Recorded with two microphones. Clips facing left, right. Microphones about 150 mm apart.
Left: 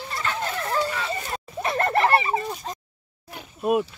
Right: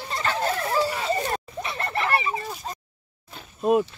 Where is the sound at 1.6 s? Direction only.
50° left (ahead or behind).